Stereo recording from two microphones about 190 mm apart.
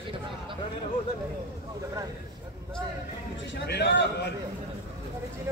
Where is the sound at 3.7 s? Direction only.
65° left (ahead or behind).